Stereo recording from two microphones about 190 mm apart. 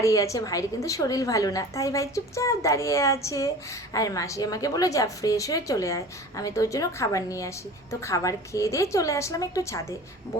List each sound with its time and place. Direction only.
0.0 s a woman's voice: 15° left (ahead or behind)